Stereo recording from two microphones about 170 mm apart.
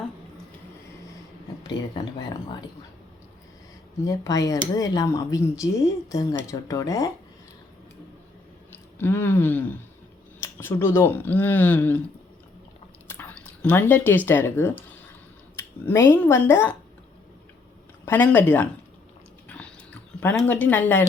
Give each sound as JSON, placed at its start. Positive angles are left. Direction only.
{"t": 1.6, "sound": "speech", "side_deg": 25}
{"t": 4.0, "sound": "speech", "side_deg": 20}
{"t": 8.7, "sound": "speech", "side_deg": 15}
{"t": 13.1, "sound": "chewing", "side_deg": 10}
{"t": 14.3, "sound": "speech", "side_deg": 15}
{"t": 18.0, "sound": "speech", "side_deg": 10}
{"t": 19.5, "sound": "a sound", "side_deg": 10}